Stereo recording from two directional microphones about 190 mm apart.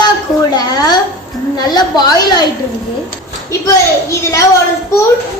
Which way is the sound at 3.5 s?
15° left (ahead or behind).